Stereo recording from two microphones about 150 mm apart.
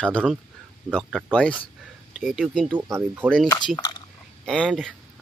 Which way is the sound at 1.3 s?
5° left (ahead or behind).